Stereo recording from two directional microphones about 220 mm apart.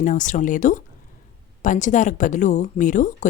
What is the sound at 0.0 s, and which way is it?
Speech, 35° left (ahead or behind).